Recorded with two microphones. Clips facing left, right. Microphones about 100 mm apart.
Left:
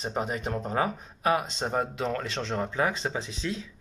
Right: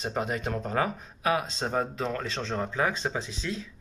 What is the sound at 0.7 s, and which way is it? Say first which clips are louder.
Speech: left 1 dB; 35° left (ahead or behind).